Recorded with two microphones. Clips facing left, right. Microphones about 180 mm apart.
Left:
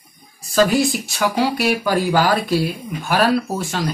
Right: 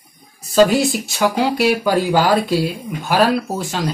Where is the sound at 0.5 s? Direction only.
20° right (ahead or behind).